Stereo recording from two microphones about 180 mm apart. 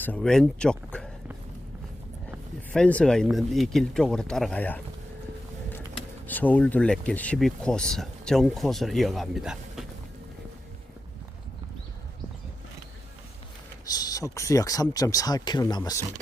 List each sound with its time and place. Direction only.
0.0 s speech: 5° left (ahead or behind)
2.7 s speech: 5° left (ahead or behind)
6.2 s speech: 10° left (ahead or behind)
13.8 s speech: 20° left (ahead or behind)